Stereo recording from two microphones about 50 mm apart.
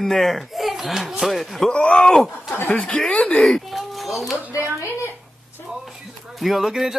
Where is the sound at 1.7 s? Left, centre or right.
Left.